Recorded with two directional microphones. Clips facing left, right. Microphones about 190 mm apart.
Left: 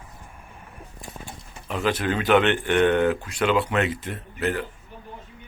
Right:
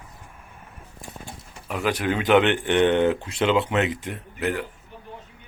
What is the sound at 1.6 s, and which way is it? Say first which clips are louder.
A man's voice: even; 10° right (ahead or behind).